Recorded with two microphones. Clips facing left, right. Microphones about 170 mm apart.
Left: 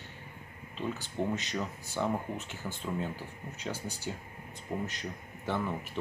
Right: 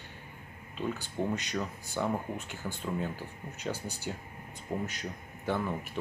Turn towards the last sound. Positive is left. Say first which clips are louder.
# right 1 dB
turn(degrees=-5)  # may be behind; listen again after turning